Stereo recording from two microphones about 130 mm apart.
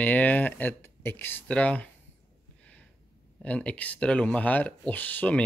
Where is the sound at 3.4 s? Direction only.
10° left (ahead or behind).